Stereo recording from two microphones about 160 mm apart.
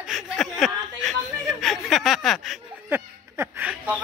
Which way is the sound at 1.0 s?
Centre (ahead or behind).